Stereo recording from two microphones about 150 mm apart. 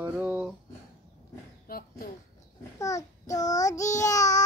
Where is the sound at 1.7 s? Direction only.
75° left (ahead or behind).